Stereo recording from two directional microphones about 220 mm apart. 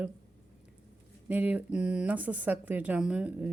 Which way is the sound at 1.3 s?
5° right (ahead or behind).